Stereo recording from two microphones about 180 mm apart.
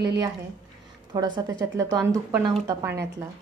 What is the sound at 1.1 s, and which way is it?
A woman's voice, 20° right (ahead or behind).